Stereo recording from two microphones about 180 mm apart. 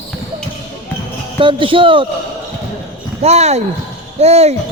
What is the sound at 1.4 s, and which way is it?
Speech, 30° right (ahead or behind).